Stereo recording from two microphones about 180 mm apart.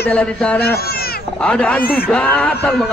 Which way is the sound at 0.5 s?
60° left (ahead or behind).